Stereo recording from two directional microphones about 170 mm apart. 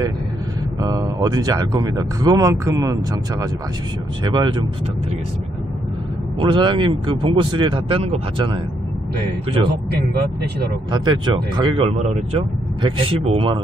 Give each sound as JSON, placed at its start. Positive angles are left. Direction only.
{"t": 0.7, "sound": "speech", "side_deg": -20}
{"t": 6.4, "sound": "speech", "side_deg": -30}
{"t": 10.9, "sound": "speech", "side_deg": -25}